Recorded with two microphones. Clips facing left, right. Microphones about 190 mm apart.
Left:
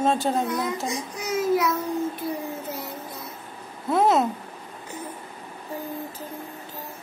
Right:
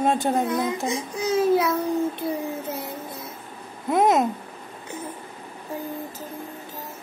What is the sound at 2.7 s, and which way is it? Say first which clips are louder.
Music: right 2 dB; 25° right (ahead or behind).